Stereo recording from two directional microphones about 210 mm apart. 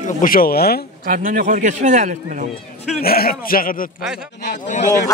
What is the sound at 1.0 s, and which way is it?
A man's voice, 40° right (ahead or behind).